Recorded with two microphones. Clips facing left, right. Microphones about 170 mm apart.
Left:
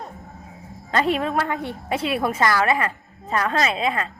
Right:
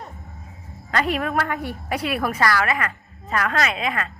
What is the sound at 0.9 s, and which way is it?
A woman's voice, 25° left (ahead or behind).